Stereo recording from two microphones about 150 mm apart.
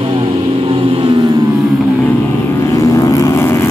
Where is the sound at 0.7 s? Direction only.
35° right (ahead or behind).